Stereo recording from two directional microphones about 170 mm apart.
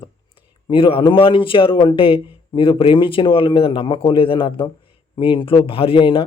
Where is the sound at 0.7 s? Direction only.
30° left (ahead or behind).